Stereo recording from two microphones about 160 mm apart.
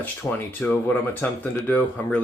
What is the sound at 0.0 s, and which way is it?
Speech, 10° left (ahead or behind).